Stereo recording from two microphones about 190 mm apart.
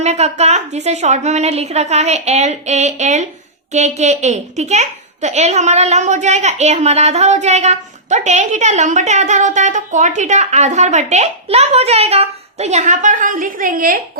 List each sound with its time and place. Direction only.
0.0 s a child's voice: 35° right (ahead or behind)